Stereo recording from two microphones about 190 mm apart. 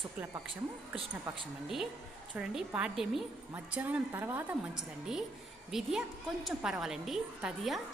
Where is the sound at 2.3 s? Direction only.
5° right (ahead or behind).